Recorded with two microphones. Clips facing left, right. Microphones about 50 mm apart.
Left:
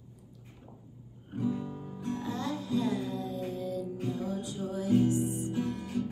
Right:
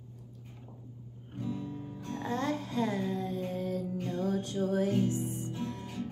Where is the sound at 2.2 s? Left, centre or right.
Right.